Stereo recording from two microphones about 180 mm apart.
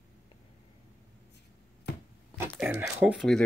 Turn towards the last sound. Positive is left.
turn(degrees=0)  # may be behind; listen again after turning